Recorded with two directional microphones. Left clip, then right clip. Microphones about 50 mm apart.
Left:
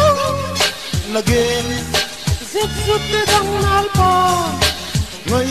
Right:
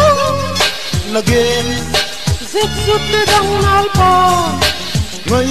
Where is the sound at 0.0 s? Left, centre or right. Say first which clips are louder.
Right 3 dB; right.